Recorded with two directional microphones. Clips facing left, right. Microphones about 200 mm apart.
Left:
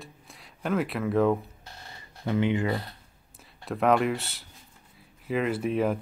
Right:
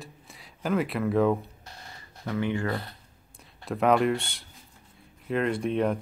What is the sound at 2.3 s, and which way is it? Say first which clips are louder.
Speech: left 3 dB; 20° left (ahead or behind).